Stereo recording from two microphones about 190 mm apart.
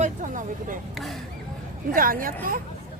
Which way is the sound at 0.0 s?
40° right (ahead or behind).